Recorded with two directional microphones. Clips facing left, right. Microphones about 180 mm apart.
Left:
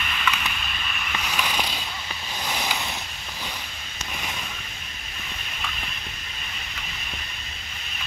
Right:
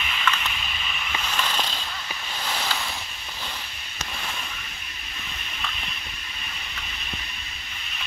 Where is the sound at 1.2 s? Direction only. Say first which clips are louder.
Left 1 dB; 15° left (ahead or behind).